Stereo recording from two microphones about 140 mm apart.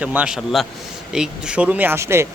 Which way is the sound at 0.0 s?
10° right (ahead or behind).